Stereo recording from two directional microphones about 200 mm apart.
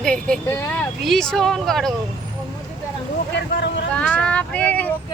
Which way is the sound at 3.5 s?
60° left (ahead or behind).